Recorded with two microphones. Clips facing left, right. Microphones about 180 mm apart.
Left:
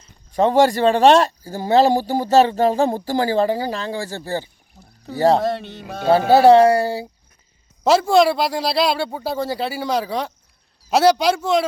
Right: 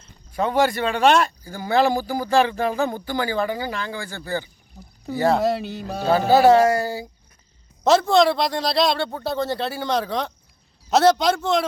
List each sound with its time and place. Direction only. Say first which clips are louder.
0.3 s a man's voice: left 5 dB; 30° left (ahead or behind)
5.4 s speech: right 1 dB; 5° right (ahead or behind)
6.4 s a man's voice: left 4 dB; 30° left (ahead or behind)
7.9 s speech: left 2 dB; 10° left (ahead or behind)